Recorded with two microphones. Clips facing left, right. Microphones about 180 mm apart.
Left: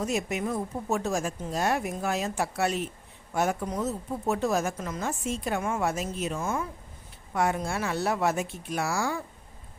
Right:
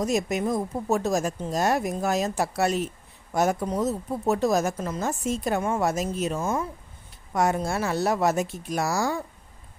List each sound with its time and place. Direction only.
0.0 s speech: 40° right (ahead or behind)